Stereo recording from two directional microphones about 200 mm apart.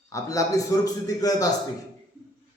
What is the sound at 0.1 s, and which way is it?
A man's voice, 15° left (ahead or behind).